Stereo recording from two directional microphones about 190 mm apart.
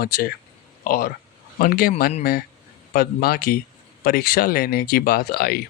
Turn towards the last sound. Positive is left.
turn(degrees=50)  # may be behind; listen again after turning